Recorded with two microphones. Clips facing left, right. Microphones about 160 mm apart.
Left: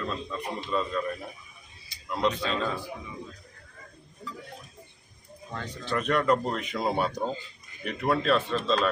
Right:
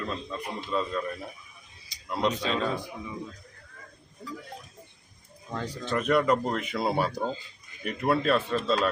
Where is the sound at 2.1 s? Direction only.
5° right (ahead or behind).